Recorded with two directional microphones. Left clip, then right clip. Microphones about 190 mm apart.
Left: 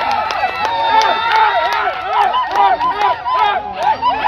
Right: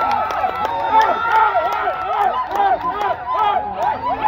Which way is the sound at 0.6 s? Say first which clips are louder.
Left 3 dB; 35° right (ahead or behind).